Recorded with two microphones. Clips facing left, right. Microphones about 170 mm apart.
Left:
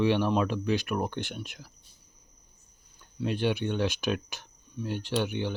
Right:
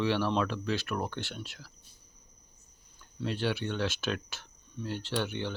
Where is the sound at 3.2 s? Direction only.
15° left (ahead or behind).